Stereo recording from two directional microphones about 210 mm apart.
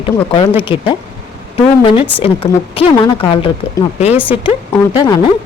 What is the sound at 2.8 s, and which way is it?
A woman's voice, 25° left (ahead or behind).